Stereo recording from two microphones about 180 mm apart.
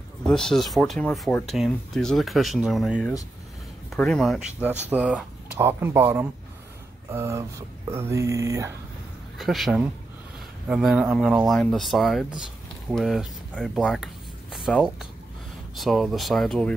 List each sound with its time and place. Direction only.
0.3 s speech: centre (ahead or behind); by 8.7 s 15° right (ahead or behind)
9.4 s speech: centre (ahead or behind)